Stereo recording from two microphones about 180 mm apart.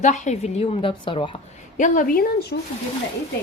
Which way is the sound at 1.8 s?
50° left (ahead or behind).